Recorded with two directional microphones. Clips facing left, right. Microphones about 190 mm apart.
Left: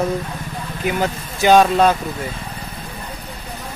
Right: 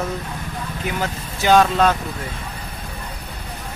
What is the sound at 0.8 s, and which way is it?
Speech, 15° left (ahead or behind).